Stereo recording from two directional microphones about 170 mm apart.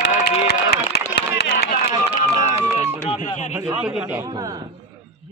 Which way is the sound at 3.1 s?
35° left (ahead or behind).